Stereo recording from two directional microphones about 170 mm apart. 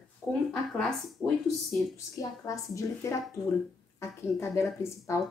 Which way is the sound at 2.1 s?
20° left (ahead or behind).